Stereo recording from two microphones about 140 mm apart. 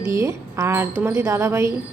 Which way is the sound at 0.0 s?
20° right (ahead or behind).